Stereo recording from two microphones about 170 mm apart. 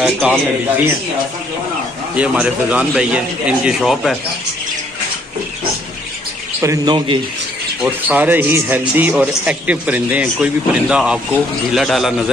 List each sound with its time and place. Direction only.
0.0 s speech: 5° right (ahead or behind)
2.1 s speech: 5° right (ahead or behind)
6.6 s a man's voice: 20° right (ahead or behind); by 12.1 s centre (ahead or behind)